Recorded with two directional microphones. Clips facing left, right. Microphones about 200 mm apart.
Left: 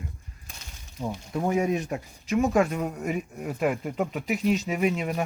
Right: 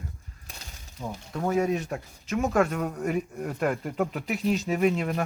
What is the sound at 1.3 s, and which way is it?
A man's voice, 15° left (ahead or behind).